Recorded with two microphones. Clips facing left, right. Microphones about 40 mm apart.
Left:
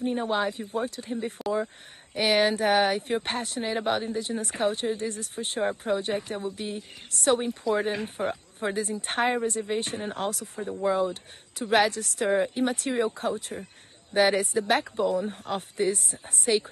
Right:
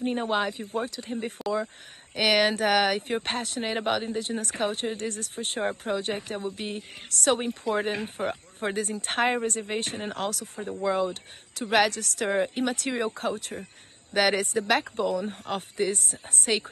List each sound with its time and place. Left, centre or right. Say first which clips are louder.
0.0 s speech: even; right
1.4 s speech: even; centre
2.1 s speech: even; right
7.3 s speech: left 2 dB; right
12.3 s speech: left 2 dB; right